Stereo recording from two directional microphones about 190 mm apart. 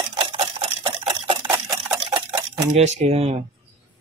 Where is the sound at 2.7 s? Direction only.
35° right (ahead or behind).